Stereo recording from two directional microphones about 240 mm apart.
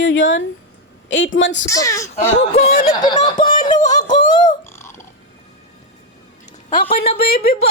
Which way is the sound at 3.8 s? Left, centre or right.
Left.